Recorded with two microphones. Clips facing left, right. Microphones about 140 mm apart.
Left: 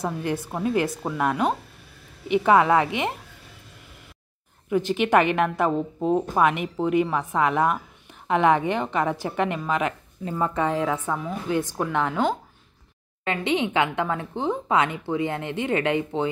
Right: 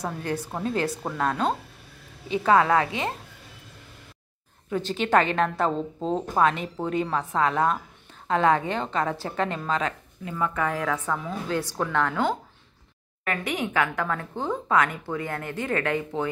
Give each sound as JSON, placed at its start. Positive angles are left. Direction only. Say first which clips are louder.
{"t": 0.5, "sound": "a woman's voice", "louder": "left 4 dB", "side_deg": 10}
{"t": 4.6, "sound": "a woman's voice", "louder": "left 4 dB", "side_deg": 15}
{"t": 10.2, "sound": "a woman's voice", "louder": "left 3 dB", "side_deg": 30}